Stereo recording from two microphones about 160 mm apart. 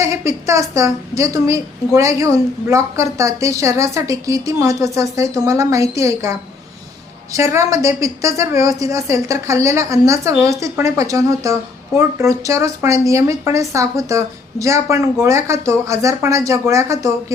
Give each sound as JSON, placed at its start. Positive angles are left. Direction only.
{"t": 0.0, "sound": "a woman's voice", "side_deg": -20}
{"t": 7.3, "sound": "a woman's voice", "side_deg": -20}